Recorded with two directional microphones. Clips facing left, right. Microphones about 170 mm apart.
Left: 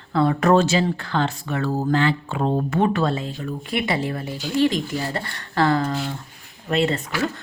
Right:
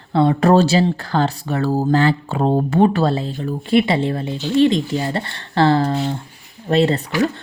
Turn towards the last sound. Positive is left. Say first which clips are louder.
# right 5 dB
turn(degrees=-35)  # may be behind; listen again after turning